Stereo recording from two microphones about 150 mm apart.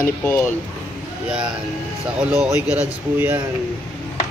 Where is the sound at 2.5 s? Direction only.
10° right (ahead or behind).